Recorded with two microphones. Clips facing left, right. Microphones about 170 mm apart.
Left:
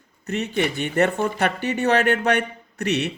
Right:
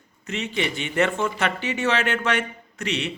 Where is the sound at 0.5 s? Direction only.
50° left (ahead or behind).